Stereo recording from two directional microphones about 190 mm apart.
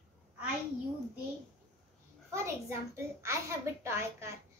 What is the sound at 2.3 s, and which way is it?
A child's voice, 15° right (ahead or behind).